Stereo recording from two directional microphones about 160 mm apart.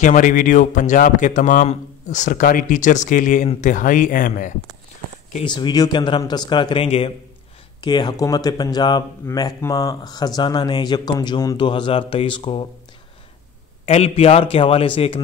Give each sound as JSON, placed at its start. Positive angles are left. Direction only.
{"t": 0.0, "sound": "speech", "side_deg": 55}
{"t": 5.4, "sound": "speech", "side_deg": 30}
{"t": 7.8, "sound": "speech", "side_deg": 25}
{"t": 13.8, "sound": "speech", "side_deg": 40}